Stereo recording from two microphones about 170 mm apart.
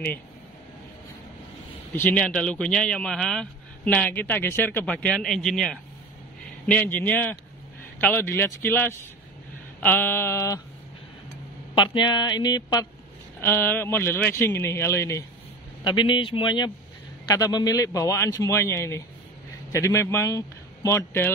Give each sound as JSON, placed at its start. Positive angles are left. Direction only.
{"t": 2.0, "sound": "a man's voice", "side_deg": 10}
{"t": 11.7, "sound": "a man's voice", "side_deg": 25}
{"t": 13.4, "sound": "a man's voice", "side_deg": 10}
{"t": 15.8, "sound": "a man's voice", "side_deg": 25}